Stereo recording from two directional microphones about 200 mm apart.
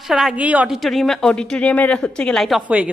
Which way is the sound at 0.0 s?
Centre (ahead or behind).